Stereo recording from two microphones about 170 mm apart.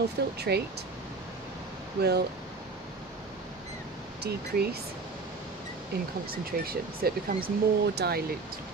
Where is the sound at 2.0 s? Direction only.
70° right (ahead or behind).